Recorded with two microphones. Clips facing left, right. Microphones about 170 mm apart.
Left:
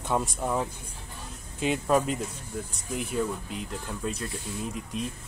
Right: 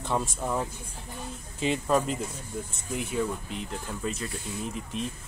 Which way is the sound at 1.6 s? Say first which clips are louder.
Left 1 dB; 5° left (ahead or behind).